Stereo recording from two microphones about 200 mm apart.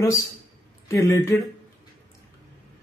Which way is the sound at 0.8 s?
15° left (ahead or behind).